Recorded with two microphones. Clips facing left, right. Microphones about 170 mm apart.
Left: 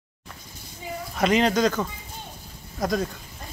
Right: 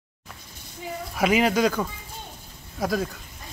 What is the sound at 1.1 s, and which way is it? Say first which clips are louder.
Speech: even; 5° right (ahead or behind).